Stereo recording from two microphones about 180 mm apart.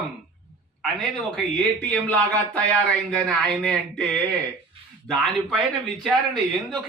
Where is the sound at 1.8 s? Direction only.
10° left (ahead or behind).